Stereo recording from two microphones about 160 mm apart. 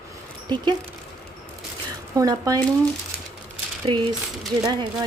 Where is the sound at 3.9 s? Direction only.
35° right (ahead or behind).